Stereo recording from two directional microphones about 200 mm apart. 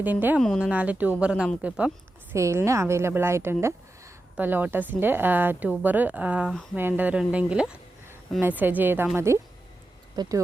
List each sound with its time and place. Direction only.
0.0 s a woman's voice: 10° right (ahead or behind)
0.4 s a woman's voice: centre (ahead or behind); by 10.4 s 15° right (ahead or behind)